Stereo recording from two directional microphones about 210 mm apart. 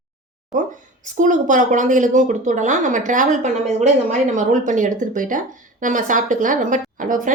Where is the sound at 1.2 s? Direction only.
35° right (ahead or behind).